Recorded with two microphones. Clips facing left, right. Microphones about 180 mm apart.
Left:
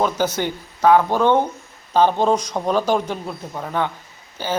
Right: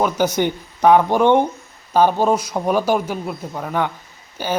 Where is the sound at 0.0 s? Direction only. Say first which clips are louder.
Right 2 dB; 15° right (ahead or behind).